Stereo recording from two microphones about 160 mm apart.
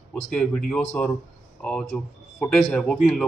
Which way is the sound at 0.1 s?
5° left (ahead or behind).